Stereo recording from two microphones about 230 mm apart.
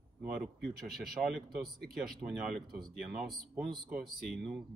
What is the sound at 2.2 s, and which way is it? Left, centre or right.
Speech, right.